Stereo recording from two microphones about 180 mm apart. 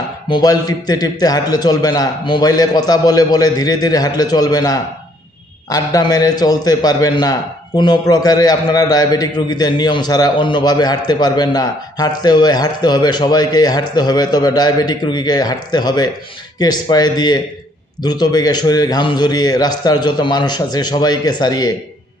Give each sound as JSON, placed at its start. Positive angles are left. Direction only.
{"t": 0.3, "sound": "a man's voice", "side_deg": 25}